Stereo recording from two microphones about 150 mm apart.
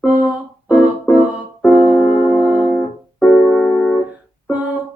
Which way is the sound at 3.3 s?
5° left (ahead or behind).